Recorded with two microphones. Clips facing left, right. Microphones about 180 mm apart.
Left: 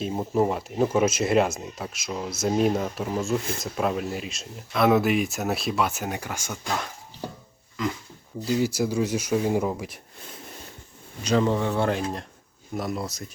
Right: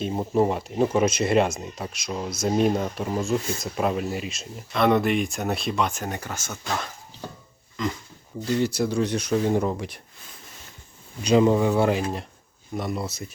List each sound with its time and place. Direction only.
0.0 s speech: centre (ahead or behind)
8.4 s speech: 5° left (ahead or behind)
11.2 s speech: 15° right (ahead or behind)